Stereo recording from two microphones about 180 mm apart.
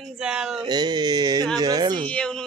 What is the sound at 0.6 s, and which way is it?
Speech, 25° right (ahead or behind).